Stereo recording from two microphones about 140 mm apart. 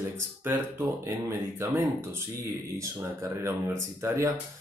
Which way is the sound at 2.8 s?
20° right (ahead or behind).